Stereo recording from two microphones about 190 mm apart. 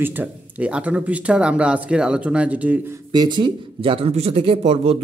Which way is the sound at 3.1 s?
25° right (ahead or behind).